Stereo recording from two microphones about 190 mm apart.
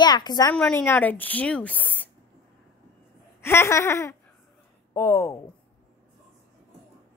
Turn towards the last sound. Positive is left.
turn(degrees=15)  # may be behind; listen again after turning